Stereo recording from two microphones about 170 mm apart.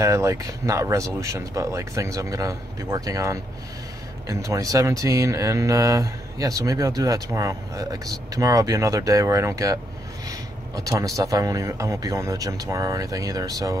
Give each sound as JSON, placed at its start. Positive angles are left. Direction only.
{"t": 0.0, "sound": "speech", "side_deg": -20}